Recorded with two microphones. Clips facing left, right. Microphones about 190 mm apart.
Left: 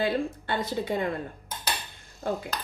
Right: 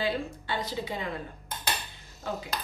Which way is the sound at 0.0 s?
50° left (ahead or behind).